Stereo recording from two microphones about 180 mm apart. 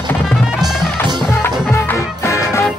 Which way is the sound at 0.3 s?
Centre (ahead or behind).